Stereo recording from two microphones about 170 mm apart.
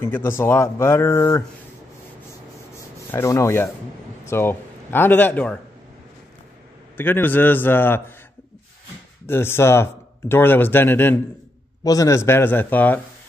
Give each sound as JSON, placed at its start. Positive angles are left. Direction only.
{"t": 0.0, "sound": "speech", "side_deg": 15}
{"t": 2.7, "sound": "rub", "side_deg": 15}
{"t": 4.3, "sound": "speech", "side_deg": 15}
{"t": 7.0, "sound": "speech", "side_deg": 10}
{"t": 9.2, "sound": "speech", "side_deg": 15}